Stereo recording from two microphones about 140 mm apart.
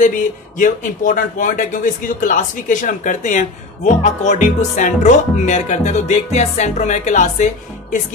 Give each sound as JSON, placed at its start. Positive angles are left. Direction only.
{"t": 0.6, "sound": "speech", "side_deg": 70}